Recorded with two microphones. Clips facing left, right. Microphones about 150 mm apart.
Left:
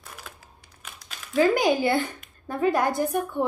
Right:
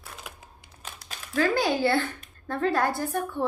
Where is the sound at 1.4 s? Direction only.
15° left (ahead or behind).